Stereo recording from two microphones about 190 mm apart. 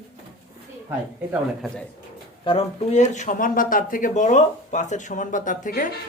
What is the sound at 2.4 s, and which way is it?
A man's voice, 30° left (ahead or behind).